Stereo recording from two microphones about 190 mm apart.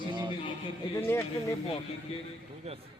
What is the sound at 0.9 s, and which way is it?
Speech, 10° left (ahead or behind).